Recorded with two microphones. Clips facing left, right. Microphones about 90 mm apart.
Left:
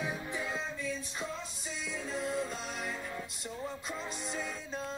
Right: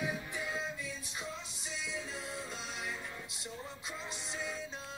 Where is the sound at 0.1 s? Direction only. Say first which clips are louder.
Left 2 dB; 25° left (ahead or behind).